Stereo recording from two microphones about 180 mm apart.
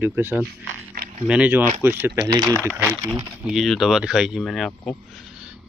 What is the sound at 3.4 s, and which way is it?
Speech, centre (ahead or behind).